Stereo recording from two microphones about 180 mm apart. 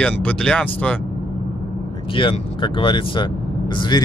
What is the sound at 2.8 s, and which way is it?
Speech, 30° left (ahead or behind).